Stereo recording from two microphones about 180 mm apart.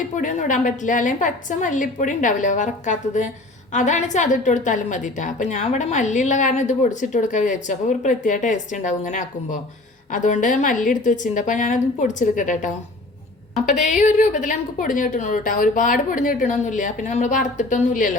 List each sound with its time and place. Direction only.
0.2 s a woman's voice: 45° left (ahead or behind)
13.8 s a woman's voice: 40° left (ahead or behind)